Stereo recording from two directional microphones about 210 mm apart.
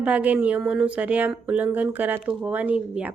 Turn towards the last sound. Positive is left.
turn(degrees=-5)  # may be behind; listen again after turning